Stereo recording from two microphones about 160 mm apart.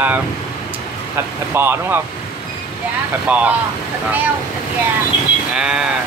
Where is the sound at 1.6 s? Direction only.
15° right (ahead or behind).